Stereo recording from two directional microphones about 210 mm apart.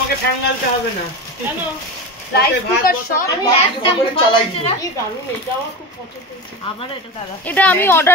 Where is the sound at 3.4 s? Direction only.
25° left (ahead or behind).